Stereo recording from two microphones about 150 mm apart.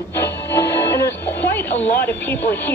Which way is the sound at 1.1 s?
15° left (ahead or behind).